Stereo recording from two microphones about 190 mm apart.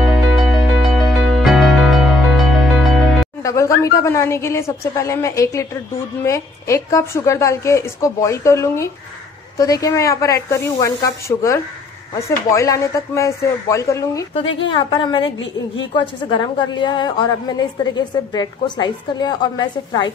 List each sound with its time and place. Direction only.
0.1 s music: centre (ahead or behind)
3.4 s a woman's voice: 15° left (ahead or behind)
14.6 s a woman's voice: 25° left (ahead or behind)
15.2 s a woman's voice: 90° left
15.9 s a woman's voice: 25° left (ahead or behind)